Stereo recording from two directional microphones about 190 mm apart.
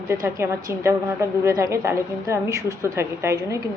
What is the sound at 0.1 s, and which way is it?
A woman's voice, 15° right (ahead or behind).